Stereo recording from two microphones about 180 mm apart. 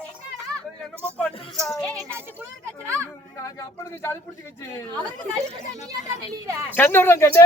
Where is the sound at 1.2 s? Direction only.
Centre (ahead or behind).